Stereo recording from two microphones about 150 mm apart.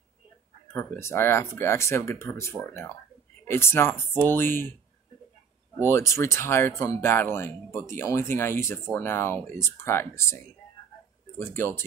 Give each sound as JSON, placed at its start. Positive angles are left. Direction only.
{"t": 0.7, "sound": "speech", "side_deg": 15}
{"t": 5.9, "sound": "speech", "side_deg": 20}